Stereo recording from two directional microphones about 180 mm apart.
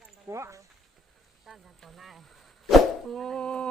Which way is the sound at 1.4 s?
Centre (ahead or behind).